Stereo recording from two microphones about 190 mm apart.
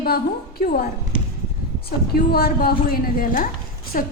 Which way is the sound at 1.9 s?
55° left (ahead or behind).